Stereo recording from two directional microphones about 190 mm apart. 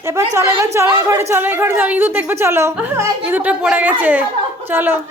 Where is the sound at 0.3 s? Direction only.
15° right (ahead or behind).